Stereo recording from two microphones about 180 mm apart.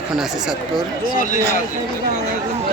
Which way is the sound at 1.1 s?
50° left (ahead or behind).